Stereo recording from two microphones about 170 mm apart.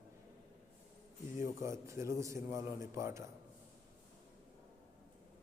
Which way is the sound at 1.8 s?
15° right (ahead or behind).